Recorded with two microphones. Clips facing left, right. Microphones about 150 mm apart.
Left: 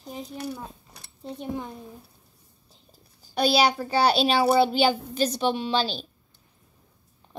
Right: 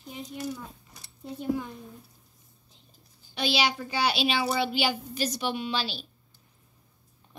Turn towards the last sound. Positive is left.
turn(degrees=35)  # may be behind; listen again after turning